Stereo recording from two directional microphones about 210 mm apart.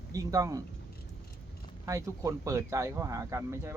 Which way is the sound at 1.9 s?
15° right (ahead or behind).